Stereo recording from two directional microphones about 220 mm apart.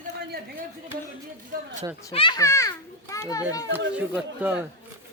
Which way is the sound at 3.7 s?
5° right (ahead or behind).